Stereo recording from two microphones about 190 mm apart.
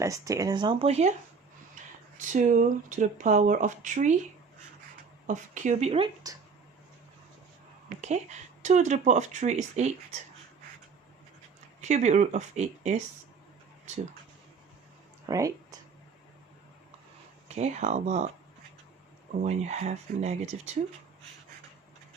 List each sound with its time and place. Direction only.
0.0 s speech: 15° right (ahead or behind); by 1.1 s 35° right (ahead or behind)
2.1 s speech: 40° right (ahead or behind)
5.2 s speech: 40° right (ahead or behind)
7.9 s speech: 35° right (ahead or behind)
11.8 s speech: 40° right (ahead or behind)
15.3 s speech: 15° right (ahead or behind)
17.5 s speech: 35° right (ahead or behind)
19.4 s speech: 35° right (ahead or behind)